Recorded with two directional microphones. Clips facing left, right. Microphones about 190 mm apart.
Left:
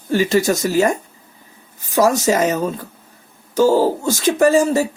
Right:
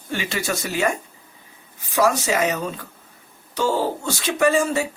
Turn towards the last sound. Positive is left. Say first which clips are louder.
# left 5 dB
turn(degrees=40)  # may be behind; listen again after turning